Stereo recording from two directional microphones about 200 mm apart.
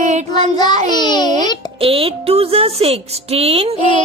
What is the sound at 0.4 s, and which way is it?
Child singing, 20° left (ahead or behind).